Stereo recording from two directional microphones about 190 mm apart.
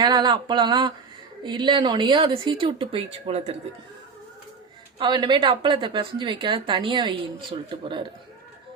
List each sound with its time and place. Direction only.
0.0 s a woman's voice: 25° right (ahead or behind)
4.9 s a woman's voice: 25° right (ahead or behind)